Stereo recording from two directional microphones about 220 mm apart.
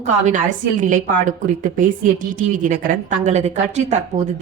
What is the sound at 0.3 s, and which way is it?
A woman's voice, 35° right (ahead or behind).